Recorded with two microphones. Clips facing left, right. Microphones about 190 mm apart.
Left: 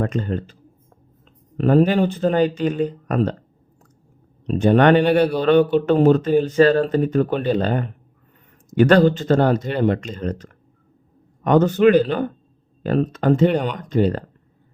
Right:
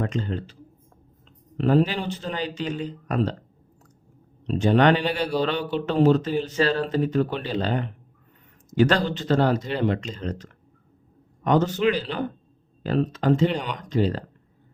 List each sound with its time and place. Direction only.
0.0 s speech: 50° left (ahead or behind)
1.5 s speech: 50° left (ahead or behind)
4.4 s speech: 50° left (ahead or behind)